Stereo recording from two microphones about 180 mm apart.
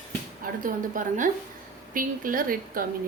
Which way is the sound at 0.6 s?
45° right (ahead or behind).